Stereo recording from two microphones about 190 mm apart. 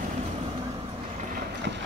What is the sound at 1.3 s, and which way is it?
Vehicle, 65° right (ahead or behind).